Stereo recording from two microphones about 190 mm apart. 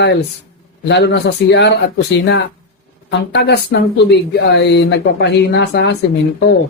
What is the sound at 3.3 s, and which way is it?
Speech, 60° left (ahead or behind).